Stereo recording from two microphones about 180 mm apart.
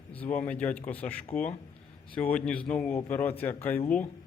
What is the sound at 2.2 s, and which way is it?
A man's voice, 5° left (ahead or behind).